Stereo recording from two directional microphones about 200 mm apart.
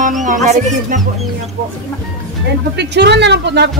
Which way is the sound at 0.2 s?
40° right (ahead or behind).